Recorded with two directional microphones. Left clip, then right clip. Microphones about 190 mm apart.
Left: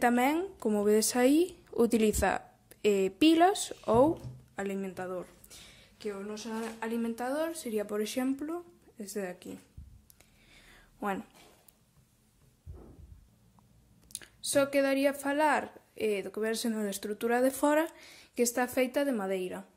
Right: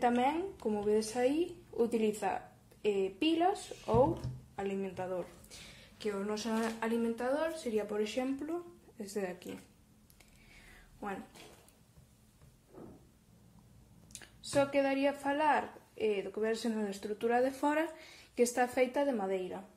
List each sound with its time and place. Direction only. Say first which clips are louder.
0.0 s a woman's voice: left 3 dB; 55° left (ahead or behind); by 6.1 s 30° left (ahead or behind)
6.1 s a woman's voice: right 3 dB; 10° left (ahead or behind)
7.0 s speech: left 2 dB; 50° left (ahead or behind); by 9.5 s 30° left (ahead or behind)
10.5 s a sound: left 1 dB; 40° left (ahead or behind)
14.1 s a woman's voice: left 3 dB; 40° left (ahead or behind)